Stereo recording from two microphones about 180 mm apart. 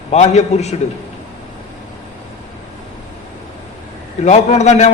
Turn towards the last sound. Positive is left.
turn(degrees=40)  # may be behind; listen again after turning